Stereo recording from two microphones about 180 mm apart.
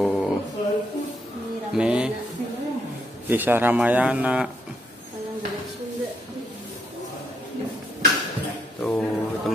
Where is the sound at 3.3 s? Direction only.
10° right (ahead or behind).